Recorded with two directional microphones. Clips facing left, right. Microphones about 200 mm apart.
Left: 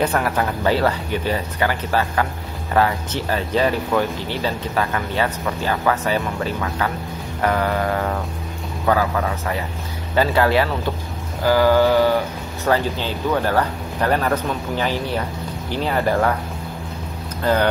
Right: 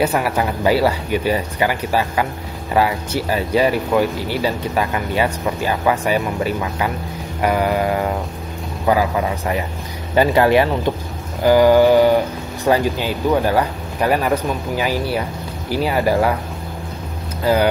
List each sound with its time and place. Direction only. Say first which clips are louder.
0.0 s speech: right 2 dB; 10° right (ahead or behind)
17.4 s speech: right 2 dB; 10° right (ahead or behind)